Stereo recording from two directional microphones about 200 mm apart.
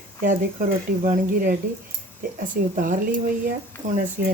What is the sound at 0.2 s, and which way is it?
Speech, 40° right (ahead or behind).